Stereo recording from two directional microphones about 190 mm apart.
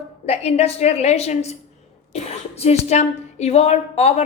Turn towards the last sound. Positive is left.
turn(degrees=35)  # may be behind; listen again after turning